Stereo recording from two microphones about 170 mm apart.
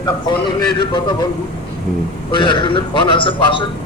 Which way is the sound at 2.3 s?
30° left (ahead or behind).